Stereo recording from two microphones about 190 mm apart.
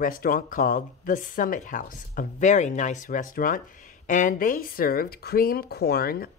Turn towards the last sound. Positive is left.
turn(degrees=55)  # may be behind; listen again after turning